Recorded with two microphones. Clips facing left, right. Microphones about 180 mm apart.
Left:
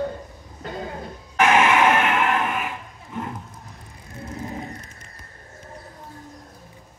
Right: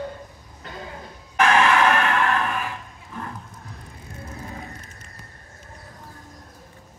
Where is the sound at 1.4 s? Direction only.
20° left (ahead or behind).